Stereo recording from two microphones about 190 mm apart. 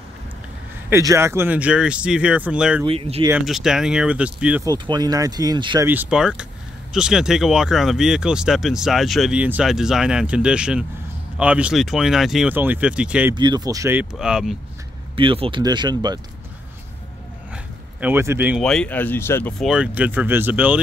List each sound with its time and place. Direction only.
0.8 s speech: 15° right (ahead or behind)
2.8 s speech: 30° right (ahead or behind)
3.3 s speech: 5° right (ahead or behind)
4.6 s speech: 20° right (ahead or behind)
5.9 s speech: 5° right (ahead or behind)
13.3 s speech: 25° right (ahead or behind)
14.1 s speech: centre (ahead or behind)
15.1 s speech: 30° right (ahead or behind)
18.0 s speech: 10° right (ahead or behind)
18.6 s speech: 5° left (ahead or behind)
19.6 s speech: 5° right (ahead or behind)